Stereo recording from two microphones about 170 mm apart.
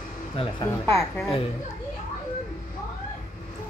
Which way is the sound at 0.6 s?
15° left (ahead or behind).